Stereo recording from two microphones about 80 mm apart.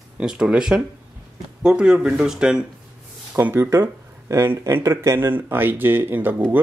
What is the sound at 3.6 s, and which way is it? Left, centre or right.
Speech, right.